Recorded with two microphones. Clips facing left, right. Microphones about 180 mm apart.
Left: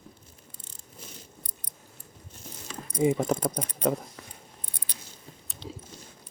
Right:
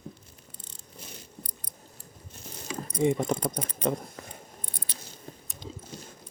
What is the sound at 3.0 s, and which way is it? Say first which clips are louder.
Speech: left 1 dB; 5° left (ahead or behind).